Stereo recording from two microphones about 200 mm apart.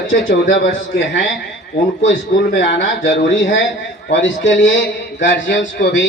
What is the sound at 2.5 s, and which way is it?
Speech, 75° left (ahead or behind).